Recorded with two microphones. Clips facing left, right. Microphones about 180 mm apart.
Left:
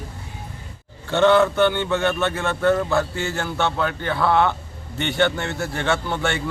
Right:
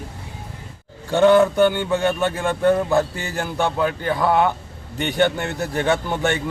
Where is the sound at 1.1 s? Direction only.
10° right (ahead or behind).